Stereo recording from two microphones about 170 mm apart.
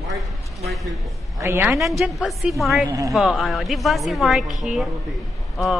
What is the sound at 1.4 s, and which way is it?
Speech, 15° right (ahead or behind).